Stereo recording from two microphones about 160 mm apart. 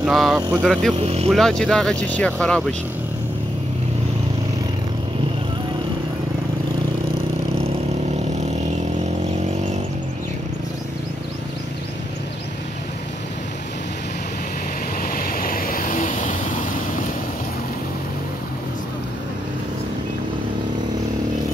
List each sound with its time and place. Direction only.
0.0 s speech: centre (ahead or behind)
0.9 s speech: 40° right (ahead or behind)
1.3 s speech: 5° left (ahead or behind)
15.0 s vehicle: 65° left (ahead or behind)